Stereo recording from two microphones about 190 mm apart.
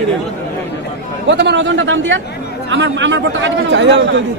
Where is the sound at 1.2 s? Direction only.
65° right (ahead or behind).